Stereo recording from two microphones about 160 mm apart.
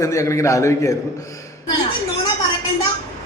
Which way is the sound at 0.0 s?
20° left (ahead or behind).